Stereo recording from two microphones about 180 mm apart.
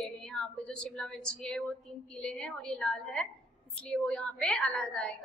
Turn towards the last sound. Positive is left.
turn(degrees=5)  # may be behind; listen again after turning